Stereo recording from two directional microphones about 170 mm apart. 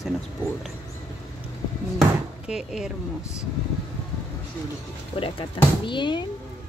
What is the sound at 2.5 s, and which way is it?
Speech, 5° right (ahead or behind).